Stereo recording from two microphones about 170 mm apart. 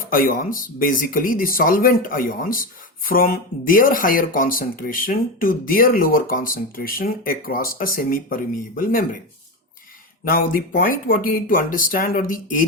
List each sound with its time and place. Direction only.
0.1 s speech: 55° left (ahead or behind)
10.2 s speech: 55° left (ahead or behind)